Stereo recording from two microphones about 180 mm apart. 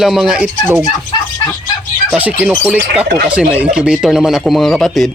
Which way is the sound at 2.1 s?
10° right (ahead or behind).